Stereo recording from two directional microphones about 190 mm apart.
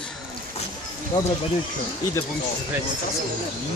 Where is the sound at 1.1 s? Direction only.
20° left (ahead or behind).